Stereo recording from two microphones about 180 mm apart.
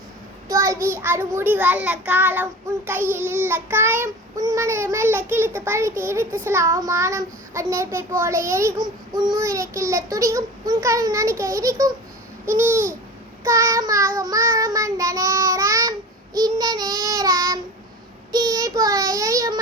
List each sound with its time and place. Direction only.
0.4 s a child's voice: 15° right (ahead or behind)
14.2 s child singing: 20° right (ahead or behind)